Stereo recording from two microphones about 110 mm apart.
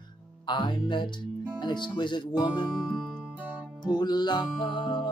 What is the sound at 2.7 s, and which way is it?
Music, 5° right (ahead or behind).